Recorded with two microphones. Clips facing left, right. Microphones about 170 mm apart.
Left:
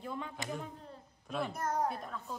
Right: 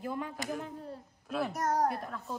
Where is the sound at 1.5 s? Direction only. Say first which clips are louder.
Right 5 dB; 75° right (ahead or behind).